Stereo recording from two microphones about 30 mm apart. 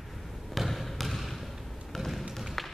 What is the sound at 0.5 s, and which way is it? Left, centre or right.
Trickle, centre.